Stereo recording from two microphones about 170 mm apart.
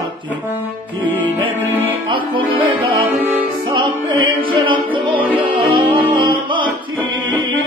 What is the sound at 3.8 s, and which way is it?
Music, 30° right (ahead or behind).